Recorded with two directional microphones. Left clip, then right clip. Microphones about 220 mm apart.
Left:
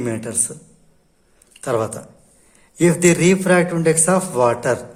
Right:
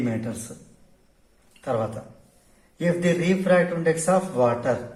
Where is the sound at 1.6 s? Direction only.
50° left (ahead or behind).